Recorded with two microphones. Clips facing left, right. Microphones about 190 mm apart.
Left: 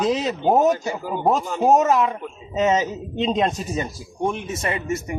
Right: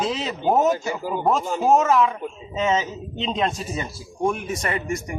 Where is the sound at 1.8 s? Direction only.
40° left (ahead or behind).